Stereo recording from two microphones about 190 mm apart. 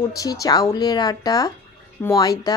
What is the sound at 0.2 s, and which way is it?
Speech, 20° left (ahead or behind).